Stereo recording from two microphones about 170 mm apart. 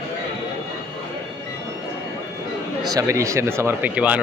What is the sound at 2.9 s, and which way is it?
Speech, 20° right (ahead or behind).